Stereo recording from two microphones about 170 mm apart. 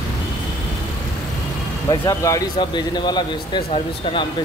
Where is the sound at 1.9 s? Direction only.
20° left (ahead or behind).